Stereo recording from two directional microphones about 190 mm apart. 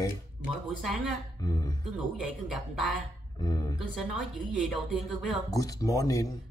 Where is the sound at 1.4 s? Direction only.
20° left (ahead or behind).